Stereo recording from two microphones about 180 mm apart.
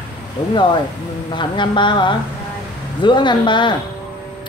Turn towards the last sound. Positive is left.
turn(degrees=25)  # may be behind; listen again after turning